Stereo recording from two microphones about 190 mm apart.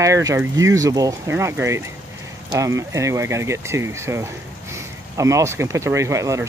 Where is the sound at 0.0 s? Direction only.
15° right (ahead or behind).